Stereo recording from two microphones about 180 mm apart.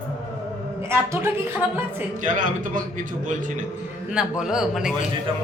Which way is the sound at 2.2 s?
45° right (ahead or behind).